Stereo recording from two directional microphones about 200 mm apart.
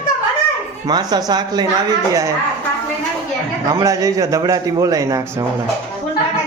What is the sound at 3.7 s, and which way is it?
A man's voice, 15° right (ahead or behind).